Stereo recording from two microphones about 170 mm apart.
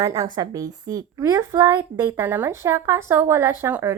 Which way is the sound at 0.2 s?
20° right (ahead or behind).